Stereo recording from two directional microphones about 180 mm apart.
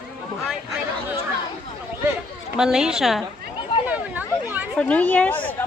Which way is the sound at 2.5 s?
5° right (ahead or behind).